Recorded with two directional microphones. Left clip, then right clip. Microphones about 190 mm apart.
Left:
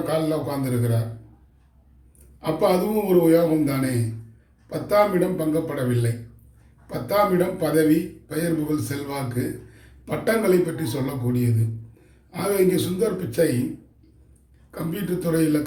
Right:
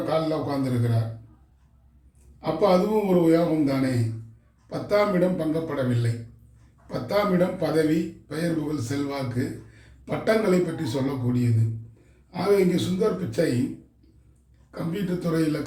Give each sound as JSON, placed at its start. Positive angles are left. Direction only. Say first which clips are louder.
{"t": 0.0, "sound": "speech", "louder": "left 1 dB", "side_deg": 20}
{"t": 2.4, "sound": "speech", "louder": "even", "side_deg": 15}
{"t": 14.7, "sound": "speech", "louder": "left 2 dB", "side_deg": 15}